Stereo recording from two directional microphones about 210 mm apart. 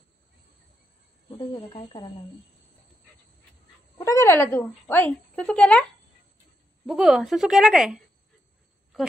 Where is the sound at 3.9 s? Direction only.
15° left (ahead or behind).